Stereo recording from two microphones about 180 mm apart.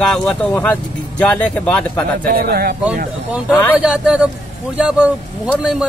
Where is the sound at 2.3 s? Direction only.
55° right (ahead or behind).